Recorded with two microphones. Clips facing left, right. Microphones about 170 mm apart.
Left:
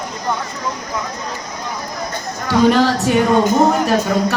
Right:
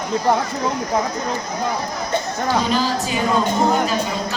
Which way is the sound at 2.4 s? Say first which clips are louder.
Left 8 dB; 70° left (ahead or behind).